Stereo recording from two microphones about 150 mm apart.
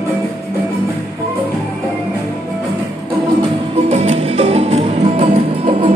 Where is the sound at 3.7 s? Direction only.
45° right (ahead or behind).